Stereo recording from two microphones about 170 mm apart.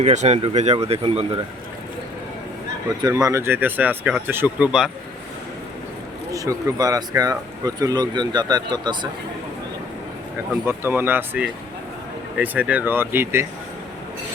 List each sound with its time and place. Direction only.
0.0 s speech: 45° right (ahead or behind)
3.0 s speech: 20° right (ahead or behind)
6.3 s speech: 20° right (ahead or behind)
10.7 s speech: 10° right (ahead or behind)